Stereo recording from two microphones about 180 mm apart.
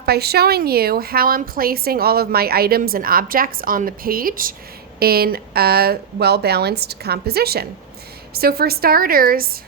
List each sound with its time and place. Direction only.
0.0 s a woman's voice: 60° right (ahead or behind)